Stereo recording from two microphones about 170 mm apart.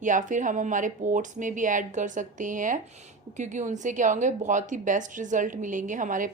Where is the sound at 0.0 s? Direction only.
50° right (ahead or behind).